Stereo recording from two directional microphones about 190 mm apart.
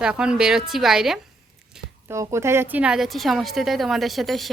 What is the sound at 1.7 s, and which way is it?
A woman's voice, 15° right (ahead or behind).